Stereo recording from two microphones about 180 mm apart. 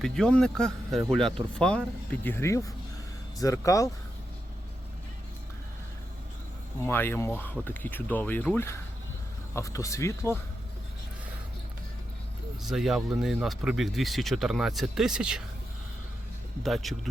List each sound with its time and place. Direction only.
0.0 s speech: 5° left (ahead or behind)
6.8 s speech: 10° left (ahead or behind)
12.6 s speech: centre (ahead or behind)
16.6 s speech: centre (ahead or behind)